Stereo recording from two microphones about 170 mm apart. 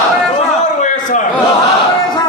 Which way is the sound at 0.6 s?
45° left (ahead or behind).